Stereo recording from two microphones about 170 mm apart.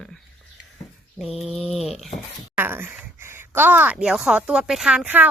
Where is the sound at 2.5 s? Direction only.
15° right (ahead or behind).